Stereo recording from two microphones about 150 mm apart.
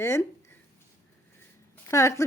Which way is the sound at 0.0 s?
15° left (ahead or behind).